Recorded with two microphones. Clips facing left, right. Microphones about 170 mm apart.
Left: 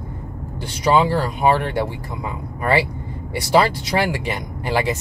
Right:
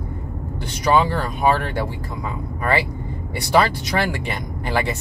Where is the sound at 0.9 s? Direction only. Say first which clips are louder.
Left 1 dB; 15° left (ahead or behind).